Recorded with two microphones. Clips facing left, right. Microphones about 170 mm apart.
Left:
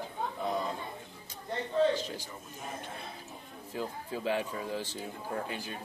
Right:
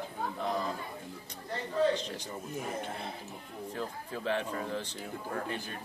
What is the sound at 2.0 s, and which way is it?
Speech, 5° left (ahead or behind).